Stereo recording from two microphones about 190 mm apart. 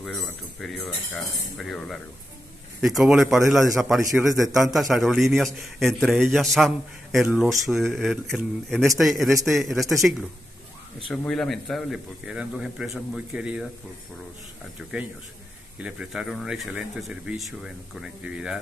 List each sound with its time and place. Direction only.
0.0 s speech: centre (ahead or behind)
4.5 s a man's voice: 20° right (ahead or behind)
4.7 s speech: centre (ahead or behind)
11.1 s speech: centre (ahead or behind)
14.8 s speech: 5° right (ahead or behind)